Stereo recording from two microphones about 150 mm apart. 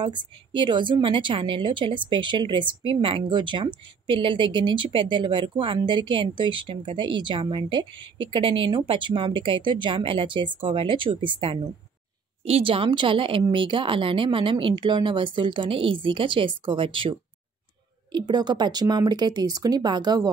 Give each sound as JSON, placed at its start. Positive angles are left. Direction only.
{"t": 0.0, "sound": "speech", "side_deg": -35}